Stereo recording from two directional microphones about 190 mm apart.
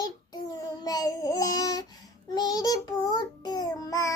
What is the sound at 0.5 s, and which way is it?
Babbling, 20° left (ahead or behind).